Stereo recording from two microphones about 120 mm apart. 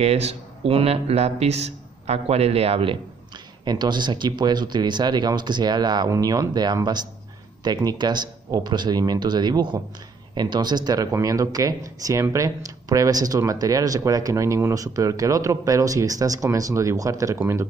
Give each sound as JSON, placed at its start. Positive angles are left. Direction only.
{"t": 0.0, "sound": "speech", "side_deg": -60}
{"t": 3.6, "sound": "speech", "side_deg": -35}